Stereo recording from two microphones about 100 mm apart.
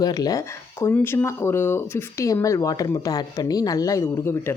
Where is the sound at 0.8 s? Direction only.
25° left (ahead or behind).